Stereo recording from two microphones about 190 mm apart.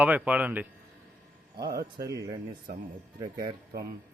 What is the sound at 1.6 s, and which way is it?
Speech, 55° right (ahead or behind).